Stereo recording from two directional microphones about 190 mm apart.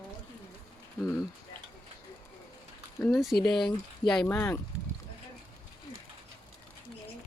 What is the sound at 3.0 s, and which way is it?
Speech, centre (ahead or behind).